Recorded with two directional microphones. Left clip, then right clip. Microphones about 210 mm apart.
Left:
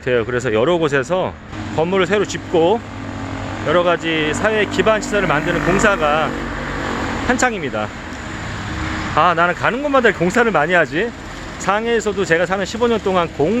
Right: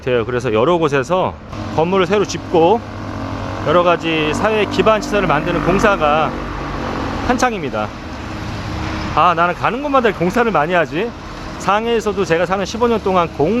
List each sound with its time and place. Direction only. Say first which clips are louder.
0.0 s speech: right 1 dB; 5° left (ahead or behind)
9.1 s speech: right 1 dB; 15° left (ahead or behind)